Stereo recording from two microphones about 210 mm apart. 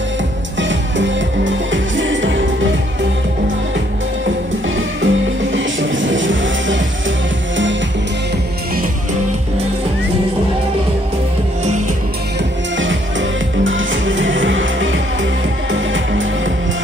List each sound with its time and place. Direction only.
0.6 s music: 60° right (ahead or behind)
4.7 s music: 65° right (ahead or behind)
13.7 s music: 65° right (ahead or behind)